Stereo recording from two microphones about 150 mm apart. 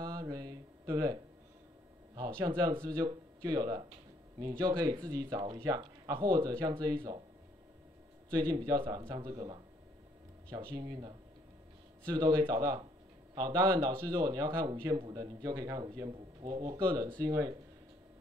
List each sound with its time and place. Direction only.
0.0 s a sound: 25° right (ahead or behind)
2.1 s speech: 25° right (ahead or behind)
8.3 s speech: 25° right (ahead or behind)